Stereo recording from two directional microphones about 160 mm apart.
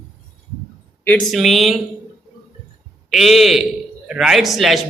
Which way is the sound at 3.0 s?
Centre (ahead or behind).